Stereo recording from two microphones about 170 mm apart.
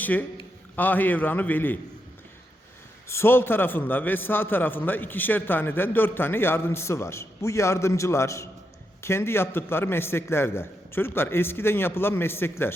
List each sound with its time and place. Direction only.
0.0 s a man's voice: 10° left (ahead or behind)
3.1 s a man's voice: 15° left (ahead or behind)